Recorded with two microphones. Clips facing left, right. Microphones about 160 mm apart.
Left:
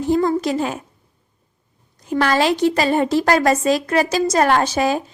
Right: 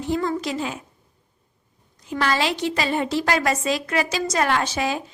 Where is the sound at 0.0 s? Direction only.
40° left (ahead or behind).